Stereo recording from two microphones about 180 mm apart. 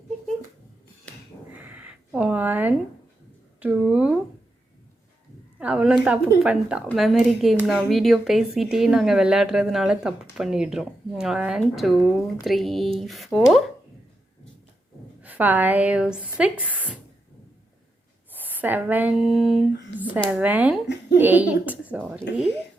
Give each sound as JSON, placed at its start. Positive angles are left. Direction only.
{"t": 1.5, "sound": "a sound", "side_deg": -10}
{"t": 3.6, "sound": "a woman's voice", "side_deg": -5}
{"t": 5.5, "sound": "speech", "side_deg": -5}
{"t": 15.2, "sound": "a woman's voice", "side_deg": -10}
{"t": 18.3, "sound": "a woman's voice", "side_deg": -10}
{"t": 20.8, "sound": "a child's voice", "side_deg": 75}
{"t": 21.2, "sound": "a woman's voice", "side_deg": -10}